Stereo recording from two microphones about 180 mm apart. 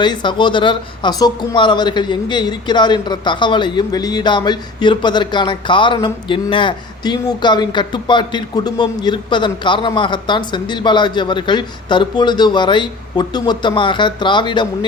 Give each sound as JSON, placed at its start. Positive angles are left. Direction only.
{"t": 0.0, "sound": "speech", "side_deg": 25}